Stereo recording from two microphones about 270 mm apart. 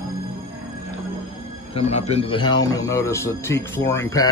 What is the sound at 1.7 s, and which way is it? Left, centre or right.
Speech, left.